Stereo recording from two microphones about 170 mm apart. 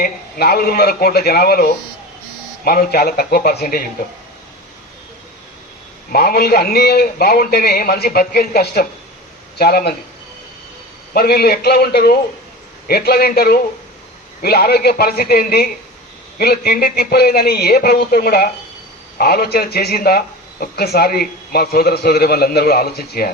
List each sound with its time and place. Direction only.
0.0 s a man's voice: 65° left (ahead or behind)
6.1 s a man's voice: 65° left (ahead or behind)
11.1 s a man's voice: 65° left (ahead or behind)